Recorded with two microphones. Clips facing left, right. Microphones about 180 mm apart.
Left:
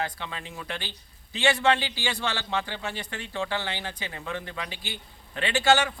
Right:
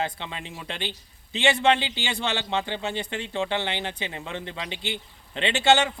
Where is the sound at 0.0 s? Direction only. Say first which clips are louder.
Right 2 dB; 20° right (ahead or behind).